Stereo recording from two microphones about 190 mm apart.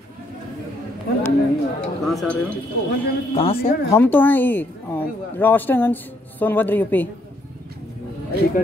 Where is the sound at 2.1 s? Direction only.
Centre (ahead or behind).